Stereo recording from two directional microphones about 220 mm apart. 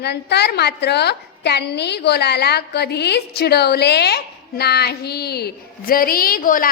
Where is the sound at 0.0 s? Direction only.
50° left (ahead or behind).